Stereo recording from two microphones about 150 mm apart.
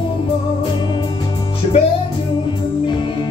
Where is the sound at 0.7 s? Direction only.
30° left (ahead or behind).